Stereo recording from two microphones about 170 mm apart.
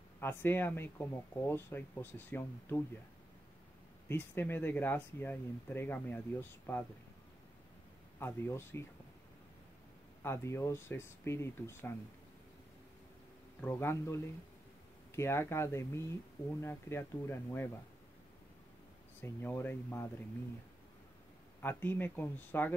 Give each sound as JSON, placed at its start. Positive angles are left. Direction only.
{"t": 0.2, "sound": "speech", "side_deg": 10}
{"t": 4.1, "sound": "speech", "side_deg": 10}
{"t": 8.2, "sound": "speech", "side_deg": 15}
{"t": 10.2, "sound": "speech", "side_deg": 15}
{"t": 13.6, "sound": "speech", "side_deg": 15}
{"t": 19.2, "sound": "speech", "side_deg": 10}
{"t": 21.5, "sound": "speech", "side_deg": 10}